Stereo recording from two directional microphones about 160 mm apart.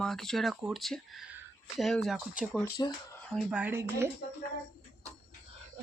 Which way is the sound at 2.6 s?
25° left (ahead or behind).